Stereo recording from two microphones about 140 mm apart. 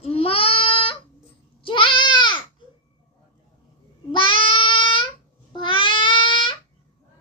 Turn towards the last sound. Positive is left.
turn(degrees=35)  # may be behind; listen again after turning